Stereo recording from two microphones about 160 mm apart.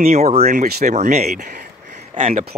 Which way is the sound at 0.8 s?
45° right (ahead or behind).